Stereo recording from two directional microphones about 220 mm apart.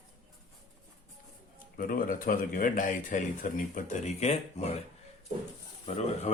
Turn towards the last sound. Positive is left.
turn(degrees=30)  # may be behind; listen again after turning